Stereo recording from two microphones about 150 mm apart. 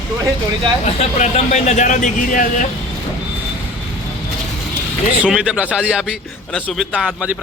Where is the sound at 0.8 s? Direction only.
50° left (ahead or behind).